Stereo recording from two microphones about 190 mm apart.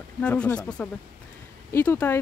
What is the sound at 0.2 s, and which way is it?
Speech, 5° left (ahead or behind).